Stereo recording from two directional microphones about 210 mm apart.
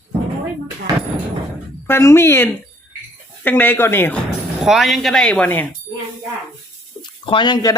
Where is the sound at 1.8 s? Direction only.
10° left (ahead or behind).